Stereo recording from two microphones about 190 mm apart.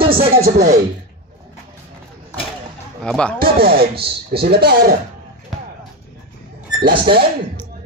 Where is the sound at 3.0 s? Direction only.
5° left (ahead or behind).